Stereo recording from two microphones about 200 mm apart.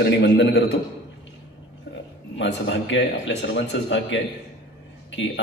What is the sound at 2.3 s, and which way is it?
A man's voice, 60° left (ahead or behind).